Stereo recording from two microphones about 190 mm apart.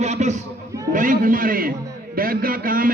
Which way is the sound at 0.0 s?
35° right (ahead or behind).